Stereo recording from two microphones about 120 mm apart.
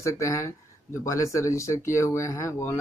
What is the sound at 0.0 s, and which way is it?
Speech, 25° left (ahead or behind).